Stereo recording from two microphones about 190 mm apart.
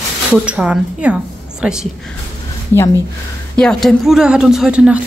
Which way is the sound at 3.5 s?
5° left (ahead or behind).